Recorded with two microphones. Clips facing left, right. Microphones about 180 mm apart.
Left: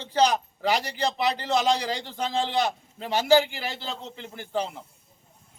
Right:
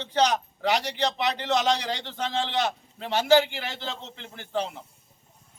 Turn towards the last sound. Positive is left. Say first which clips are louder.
# left 1 dB
turn(degrees=5)  # may be behind; listen again after turning